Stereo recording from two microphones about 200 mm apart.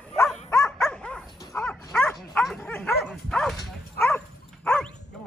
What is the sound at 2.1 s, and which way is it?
Bow-wow, centre (ahead or behind).